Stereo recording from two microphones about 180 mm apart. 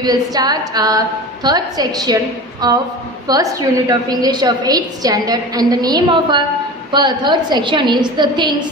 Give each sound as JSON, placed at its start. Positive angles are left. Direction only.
{"t": 0.0, "sound": "a woman's voice", "side_deg": -20}
{"t": 3.3, "sound": "a woman's voice", "side_deg": -20}